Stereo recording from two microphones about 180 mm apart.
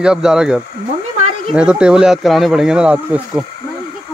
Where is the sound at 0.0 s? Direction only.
5° right (ahead or behind).